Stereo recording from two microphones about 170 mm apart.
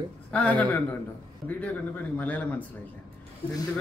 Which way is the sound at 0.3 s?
10° left (ahead or behind).